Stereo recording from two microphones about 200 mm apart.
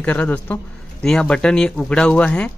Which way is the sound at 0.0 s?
10° left (ahead or behind).